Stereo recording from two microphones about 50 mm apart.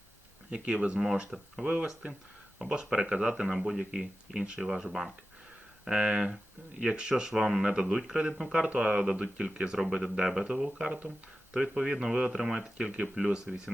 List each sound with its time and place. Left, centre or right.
0.5 s speech: right
1.3 s speech: centre
3.4 s speech: centre
9.7 s speech: centre
10.6 s speech: centre